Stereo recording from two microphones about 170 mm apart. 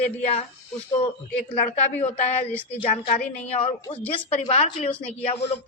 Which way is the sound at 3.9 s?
10° left (ahead or behind).